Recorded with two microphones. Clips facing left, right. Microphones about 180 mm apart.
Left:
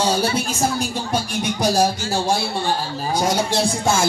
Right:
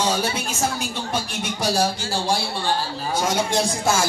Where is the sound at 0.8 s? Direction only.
40° left (ahead or behind).